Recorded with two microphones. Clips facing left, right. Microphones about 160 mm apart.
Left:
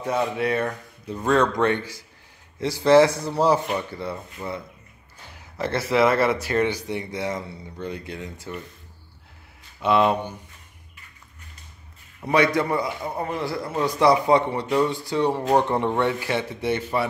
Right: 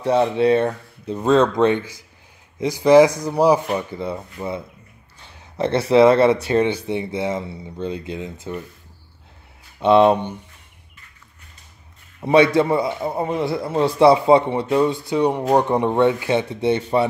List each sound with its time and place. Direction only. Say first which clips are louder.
0.0 s a man's voice: right 7 dB; 30° right (ahead or behind)
9.8 s speech: right 6 dB; 25° right (ahead or behind)
12.2 s a man's voice: right 6 dB; 25° right (ahead or behind)